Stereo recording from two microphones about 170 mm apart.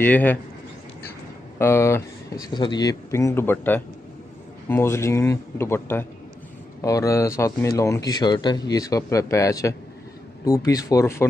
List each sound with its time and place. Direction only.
0.0 s speech: 10° left (ahead or behind)
1.6 s speech: 15° left (ahead or behind)
2.4 s speech: 25° left (ahead or behind)